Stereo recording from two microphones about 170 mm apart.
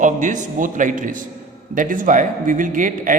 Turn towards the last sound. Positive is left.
turn(degrees=-50)  # may be behind; listen again after turning